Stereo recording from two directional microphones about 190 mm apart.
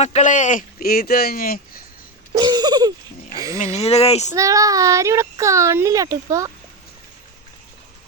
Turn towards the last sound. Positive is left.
turn(degrees=-15)  # may be behind; listen again after turning